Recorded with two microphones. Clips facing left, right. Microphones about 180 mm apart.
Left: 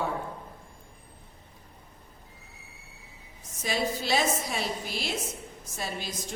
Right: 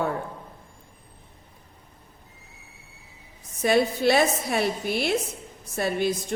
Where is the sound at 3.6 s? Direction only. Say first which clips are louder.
Right 9 dB; 60° right (ahead or behind).